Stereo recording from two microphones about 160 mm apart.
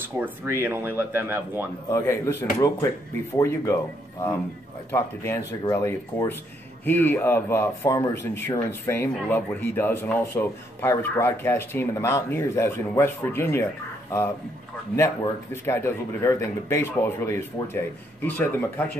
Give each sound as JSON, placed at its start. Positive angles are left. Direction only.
{"t": 0.2, "sound": "speech", "side_deg": -15}
{"t": 1.9, "sound": "a man's voice", "side_deg": 20}
{"t": 15.5, "sound": "a man's voice", "side_deg": 15}